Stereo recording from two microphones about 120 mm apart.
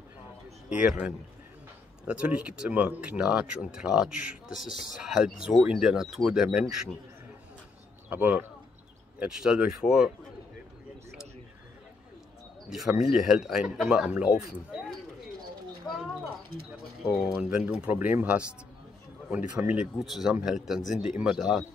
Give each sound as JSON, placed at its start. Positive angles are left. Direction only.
{"t": 0.7, "sound": "speech", "side_deg": -10}
{"t": 8.1, "sound": "speech", "side_deg": -15}
{"t": 12.6, "sound": "speech", "side_deg": -5}
{"t": 17.0, "sound": "speech", "side_deg": -5}
{"t": 20.8, "sound": "speech", "side_deg": 90}
{"t": 21.2, "sound": "speech", "side_deg": -5}